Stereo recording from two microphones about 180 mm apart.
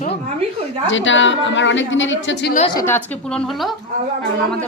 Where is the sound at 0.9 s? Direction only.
90° left.